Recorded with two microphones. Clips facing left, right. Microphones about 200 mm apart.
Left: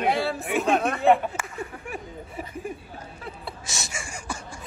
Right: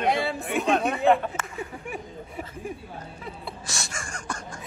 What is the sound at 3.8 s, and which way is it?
Gasp, 5° left (ahead or behind).